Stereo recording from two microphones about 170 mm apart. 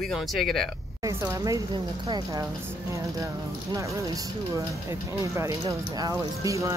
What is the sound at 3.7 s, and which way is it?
Speech, 20° right (ahead or behind).